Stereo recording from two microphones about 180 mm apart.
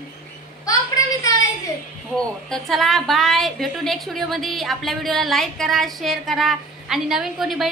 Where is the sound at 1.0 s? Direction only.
20° left (ahead or behind).